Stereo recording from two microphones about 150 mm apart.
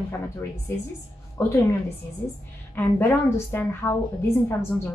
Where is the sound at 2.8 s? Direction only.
15° left (ahead or behind).